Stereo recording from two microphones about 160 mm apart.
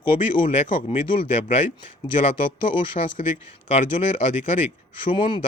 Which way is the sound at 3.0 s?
40° left (ahead or behind).